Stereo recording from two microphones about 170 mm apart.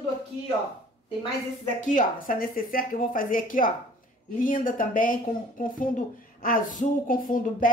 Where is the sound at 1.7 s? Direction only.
50° left (ahead or behind).